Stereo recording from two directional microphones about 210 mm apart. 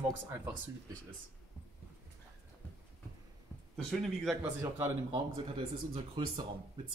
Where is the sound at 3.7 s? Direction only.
Centre (ahead or behind).